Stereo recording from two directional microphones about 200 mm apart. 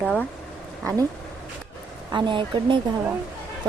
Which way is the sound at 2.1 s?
25° right (ahead or behind).